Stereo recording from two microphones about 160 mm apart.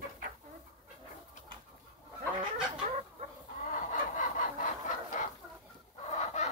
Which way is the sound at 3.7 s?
55° left (ahead or behind).